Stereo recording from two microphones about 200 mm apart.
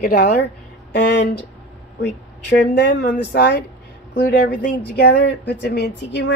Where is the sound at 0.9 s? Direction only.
55° left (ahead or behind).